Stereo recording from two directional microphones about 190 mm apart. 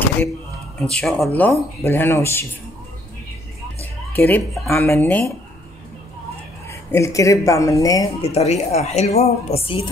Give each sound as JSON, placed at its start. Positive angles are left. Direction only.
{"t": 0.7, "sound": "speech", "side_deg": 5}
{"t": 4.1, "sound": "speech", "side_deg": 10}
{"t": 6.7, "sound": "speech", "side_deg": 15}
{"t": 8.2, "sound": "a woman's voice", "side_deg": 35}